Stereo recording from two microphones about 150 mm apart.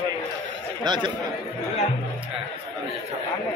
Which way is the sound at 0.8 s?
30° right (ahead or behind).